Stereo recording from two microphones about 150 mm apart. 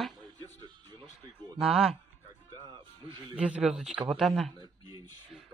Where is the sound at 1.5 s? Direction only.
Centre (ahead or behind).